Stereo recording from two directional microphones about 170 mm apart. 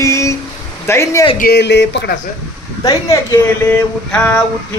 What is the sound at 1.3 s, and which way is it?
Speech, 65° left (ahead or behind).